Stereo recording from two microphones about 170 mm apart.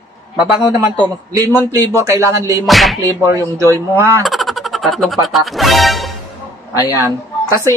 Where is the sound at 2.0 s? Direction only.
15° right (ahead or behind).